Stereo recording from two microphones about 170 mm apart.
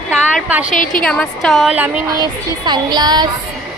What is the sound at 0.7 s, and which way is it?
Speech, 50° left (ahead or behind).